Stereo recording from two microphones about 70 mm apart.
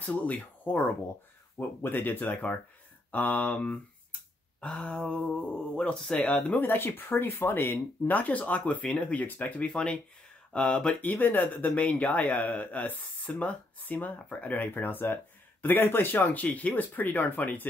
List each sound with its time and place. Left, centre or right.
0.0 s speech: left
6.6 s speech: left
9.7 s speech: centre
11.0 s speech: left